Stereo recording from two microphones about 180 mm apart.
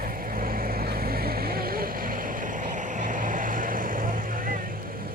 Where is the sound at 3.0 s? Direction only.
45° right (ahead or behind).